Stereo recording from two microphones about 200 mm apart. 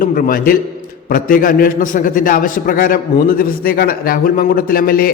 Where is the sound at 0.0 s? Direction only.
45° left (ahead or behind).